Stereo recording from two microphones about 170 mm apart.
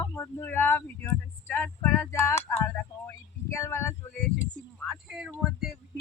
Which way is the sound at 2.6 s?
15° left (ahead or behind).